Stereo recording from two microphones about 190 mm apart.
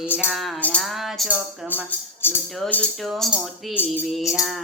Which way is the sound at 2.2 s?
10° left (ahead or behind).